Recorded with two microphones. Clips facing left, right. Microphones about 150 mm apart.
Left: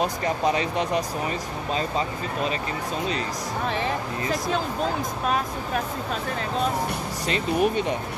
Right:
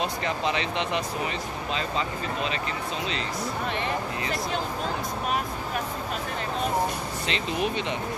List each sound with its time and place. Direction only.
0.0 s speech: 40° left (ahead or behind)
7.2 s speech: 45° left (ahead or behind)